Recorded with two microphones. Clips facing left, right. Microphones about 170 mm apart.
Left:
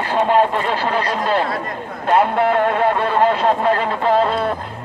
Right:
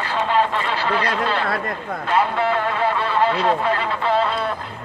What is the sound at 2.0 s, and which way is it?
Speech, 50° left (ahead or behind).